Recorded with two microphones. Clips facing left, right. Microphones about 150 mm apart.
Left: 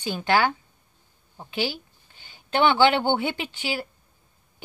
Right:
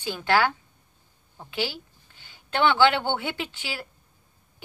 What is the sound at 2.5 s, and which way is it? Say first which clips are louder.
Speech: left 2 dB; 15° left (ahead or behind).